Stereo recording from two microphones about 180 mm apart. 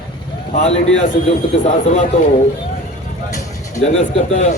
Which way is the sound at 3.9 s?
40° left (ahead or behind).